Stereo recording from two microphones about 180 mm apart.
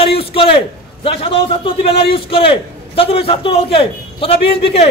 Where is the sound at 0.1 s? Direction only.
30° left (ahead or behind).